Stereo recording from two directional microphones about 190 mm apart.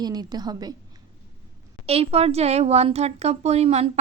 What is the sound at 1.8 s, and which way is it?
A woman's voice, 30° right (ahead or behind).